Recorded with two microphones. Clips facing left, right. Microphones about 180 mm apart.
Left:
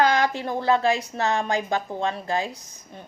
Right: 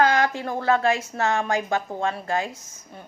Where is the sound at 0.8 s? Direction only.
35° left (ahead or behind).